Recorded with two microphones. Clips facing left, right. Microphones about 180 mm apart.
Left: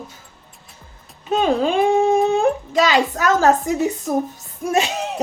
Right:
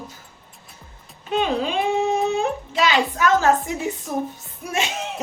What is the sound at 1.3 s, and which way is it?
A child's voice, 45° left (ahead or behind).